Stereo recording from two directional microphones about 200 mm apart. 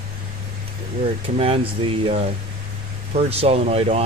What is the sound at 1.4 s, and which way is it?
Speech, 30° right (ahead or behind).